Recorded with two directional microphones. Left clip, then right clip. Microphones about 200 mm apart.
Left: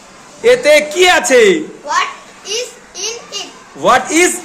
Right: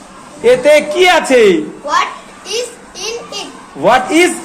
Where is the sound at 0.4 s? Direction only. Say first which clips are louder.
Right 1 dB; 20° left (ahead or behind).